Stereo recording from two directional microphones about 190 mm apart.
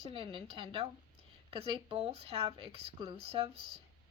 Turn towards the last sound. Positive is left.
turn(degrees=-25)  # may be behind; listen again after turning